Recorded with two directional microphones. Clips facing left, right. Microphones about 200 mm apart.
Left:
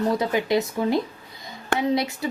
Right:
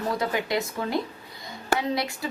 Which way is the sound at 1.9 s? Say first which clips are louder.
Left 5 dB; 20° left (ahead or behind).